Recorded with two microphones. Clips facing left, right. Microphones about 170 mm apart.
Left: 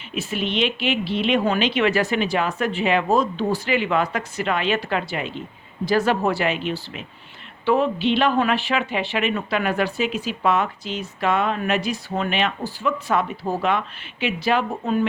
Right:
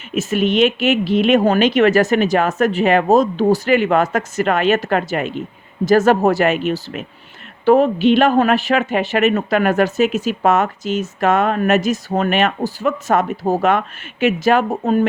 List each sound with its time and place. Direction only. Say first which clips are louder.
0.1 s speech: right 8 dB; 45° right (ahead or behind)